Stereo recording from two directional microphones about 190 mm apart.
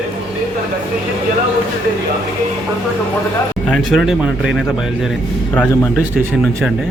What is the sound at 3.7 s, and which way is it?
Speech, centre (ahead or behind).